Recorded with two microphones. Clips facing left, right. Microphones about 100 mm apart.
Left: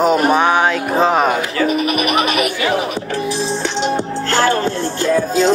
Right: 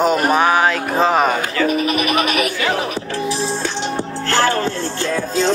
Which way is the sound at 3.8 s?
15° left (ahead or behind).